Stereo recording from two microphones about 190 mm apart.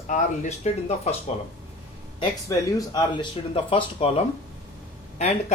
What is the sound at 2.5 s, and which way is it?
Speech, 20° left (ahead or behind).